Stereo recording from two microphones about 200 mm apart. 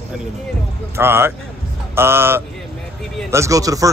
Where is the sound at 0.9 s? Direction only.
10° right (ahead or behind).